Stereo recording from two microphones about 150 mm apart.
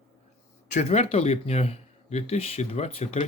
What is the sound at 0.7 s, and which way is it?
Speech, 50° left (ahead or behind).